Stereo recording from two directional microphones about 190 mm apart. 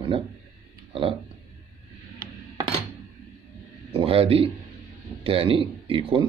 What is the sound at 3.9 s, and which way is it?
A man's voice, 30° right (ahead or behind).